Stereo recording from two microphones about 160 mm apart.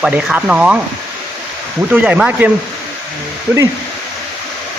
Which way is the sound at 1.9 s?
10° right (ahead or behind).